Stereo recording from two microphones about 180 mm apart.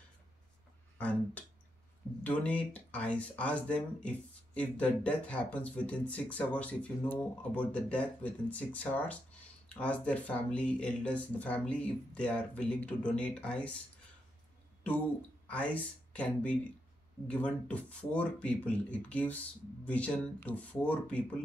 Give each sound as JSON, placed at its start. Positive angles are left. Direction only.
{"t": 0.9, "sound": "speech", "side_deg": 5}
{"t": 15.4, "sound": "speech", "side_deg": 5}